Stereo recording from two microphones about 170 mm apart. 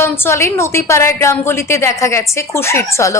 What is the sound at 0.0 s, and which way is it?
Speech, 15° left (ahead or behind).